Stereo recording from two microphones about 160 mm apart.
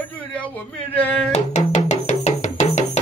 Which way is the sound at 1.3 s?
45° left (ahead or behind).